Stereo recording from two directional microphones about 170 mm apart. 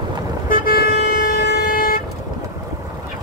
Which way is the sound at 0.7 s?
65° left (ahead or behind).